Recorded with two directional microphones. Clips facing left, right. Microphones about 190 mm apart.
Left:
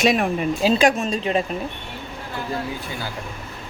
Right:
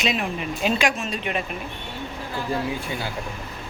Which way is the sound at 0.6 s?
35° left (ahead or behind).